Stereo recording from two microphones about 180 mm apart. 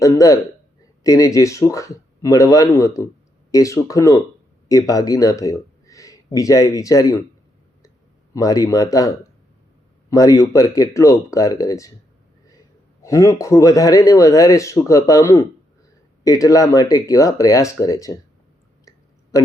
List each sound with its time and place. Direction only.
0.0 s speech: 20° left (ahead or behind)
8.3 s speech: 20° left (ahead or behind)
13.0 s speech: 15° left (ahead or behind)